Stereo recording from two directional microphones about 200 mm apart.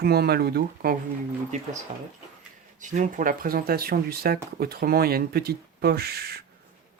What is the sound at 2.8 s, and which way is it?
Speech, 40° right (ahead or behind).